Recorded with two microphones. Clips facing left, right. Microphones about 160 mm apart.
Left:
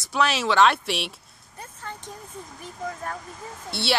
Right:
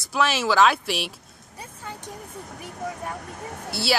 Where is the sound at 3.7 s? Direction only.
Centre (ahead or behind).